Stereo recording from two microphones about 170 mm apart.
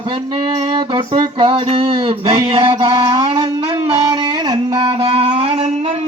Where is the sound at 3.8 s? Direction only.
30° right (ahead or behind).